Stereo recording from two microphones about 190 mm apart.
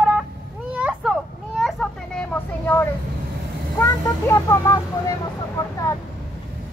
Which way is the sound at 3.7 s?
15° left (ahead or behind).